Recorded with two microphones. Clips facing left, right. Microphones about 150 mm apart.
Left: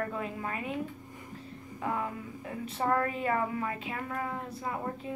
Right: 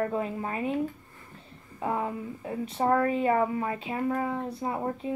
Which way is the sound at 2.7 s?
30° right (ahead or behind).